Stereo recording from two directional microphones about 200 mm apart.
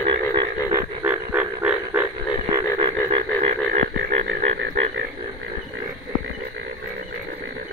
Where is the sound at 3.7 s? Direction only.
40° right (ahead or behind).